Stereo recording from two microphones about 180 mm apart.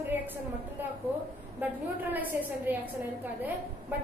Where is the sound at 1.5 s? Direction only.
10° right (ahead or behind).